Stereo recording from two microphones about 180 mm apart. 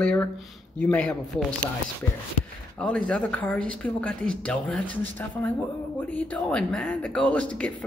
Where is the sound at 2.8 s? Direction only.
5° left (ahead or behind).